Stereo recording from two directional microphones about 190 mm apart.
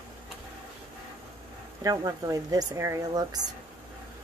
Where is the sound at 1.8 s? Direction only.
15° right (ahead or behind).